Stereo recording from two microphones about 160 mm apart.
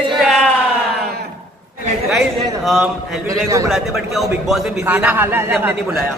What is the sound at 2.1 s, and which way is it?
A man's voice, centre (ahead or behind).